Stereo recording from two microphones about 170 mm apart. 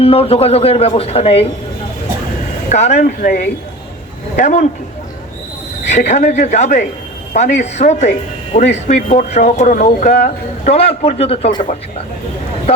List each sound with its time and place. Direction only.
0.0 s speech: 35° left (ahead or behind)
2.6 s speech: 40° left (ahead or behind)
6.1 s speech: 45° left (ahead or behind)